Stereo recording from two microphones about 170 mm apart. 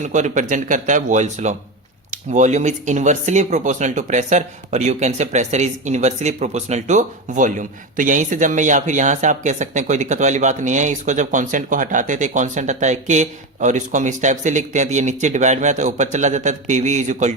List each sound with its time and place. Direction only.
0.0 s speech: 45° right (ahead or behind)